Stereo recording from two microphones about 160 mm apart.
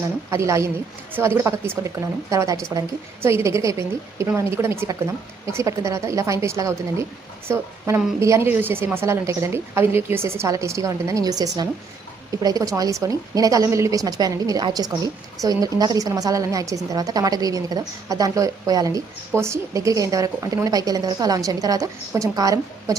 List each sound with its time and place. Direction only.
0.0 s a woman's voice: 20° right (ahead or behind)